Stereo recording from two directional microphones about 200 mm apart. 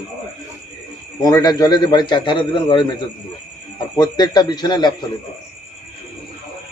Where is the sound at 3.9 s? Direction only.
20° left (ahead or behind).